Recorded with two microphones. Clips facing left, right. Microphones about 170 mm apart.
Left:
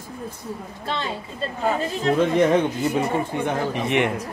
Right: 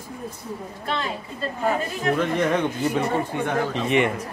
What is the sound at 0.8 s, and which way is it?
A woman's voice, 30° left (ahead or behind).